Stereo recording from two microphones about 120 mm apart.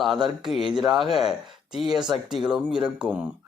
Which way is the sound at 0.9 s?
Centre (ahead or behind).